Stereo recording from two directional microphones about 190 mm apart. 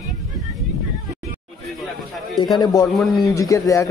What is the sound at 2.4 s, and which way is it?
Speech, 20° left (ahead or behind).